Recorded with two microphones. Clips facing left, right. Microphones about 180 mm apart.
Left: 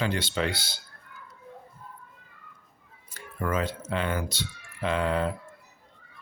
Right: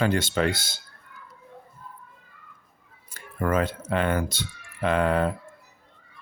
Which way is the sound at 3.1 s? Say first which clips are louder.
Right 4 dB; 50° right (ahead or behind).